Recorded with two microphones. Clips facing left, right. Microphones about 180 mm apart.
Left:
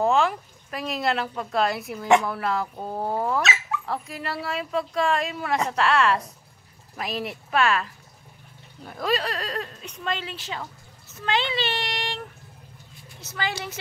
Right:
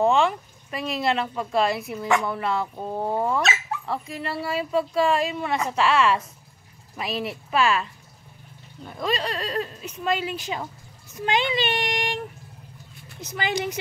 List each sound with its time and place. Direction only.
0.0 s speech: centre (ahead or behind); by 12.2 s 15° right (ahead or behind)
13.2 s a woman's voice: 15° right (ahead or behind)